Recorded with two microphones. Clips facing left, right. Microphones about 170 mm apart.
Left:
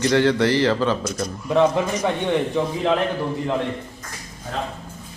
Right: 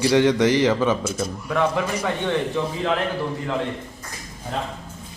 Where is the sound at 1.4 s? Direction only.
20° left (ahead or behind).